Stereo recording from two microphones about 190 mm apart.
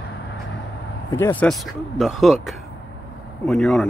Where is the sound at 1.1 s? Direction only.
10° left (ahead or behind).